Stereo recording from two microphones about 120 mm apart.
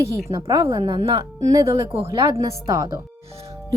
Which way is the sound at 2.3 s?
30° right (ahead or behind).